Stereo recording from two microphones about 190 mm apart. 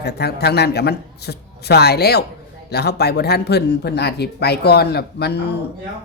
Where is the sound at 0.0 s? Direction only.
60° left (ahead or behind).